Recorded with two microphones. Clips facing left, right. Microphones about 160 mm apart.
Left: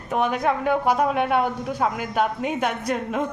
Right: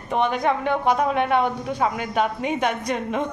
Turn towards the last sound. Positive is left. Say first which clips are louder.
# even
turn(degrees=5)  # may be behind; listen again after turning